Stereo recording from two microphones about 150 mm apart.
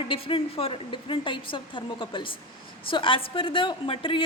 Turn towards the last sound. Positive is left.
turn(degrees=35)  # may be behind; listen again after turning